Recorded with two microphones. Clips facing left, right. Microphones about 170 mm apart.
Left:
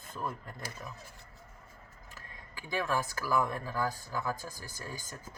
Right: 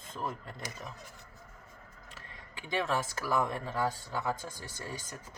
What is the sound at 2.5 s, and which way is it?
Speech, 25° right (ahead or behind).